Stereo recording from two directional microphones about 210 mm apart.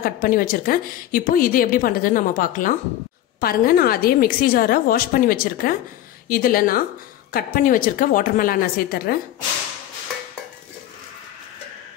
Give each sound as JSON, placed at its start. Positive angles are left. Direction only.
{"t": 0.0, "sound": "a woman's voice", "side_deg": 45}